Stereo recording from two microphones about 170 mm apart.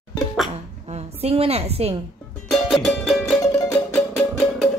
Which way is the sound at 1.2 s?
35° right (ahead or behind).